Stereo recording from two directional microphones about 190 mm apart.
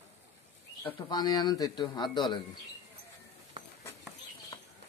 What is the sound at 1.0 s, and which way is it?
A man's voice, 20° left (ahead or behind).